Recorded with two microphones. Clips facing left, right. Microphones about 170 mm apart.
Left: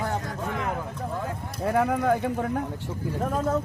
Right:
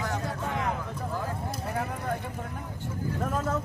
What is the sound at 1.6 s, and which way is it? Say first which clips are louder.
A man's voice: left 13 dB; 70° left (ahead or behind).